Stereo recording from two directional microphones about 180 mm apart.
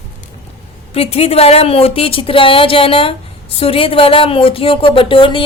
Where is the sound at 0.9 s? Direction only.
35° left (ahead or behind).